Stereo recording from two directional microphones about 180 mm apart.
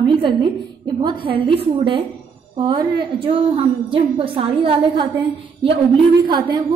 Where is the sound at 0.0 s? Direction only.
25° right (ahead or behind).